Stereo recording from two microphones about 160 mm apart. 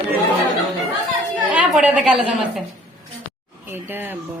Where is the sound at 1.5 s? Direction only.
5° right (ahead or behind).